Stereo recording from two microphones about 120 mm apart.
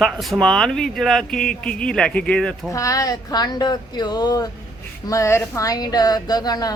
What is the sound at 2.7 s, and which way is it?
A woman's voice, 25° left (ahead or behind).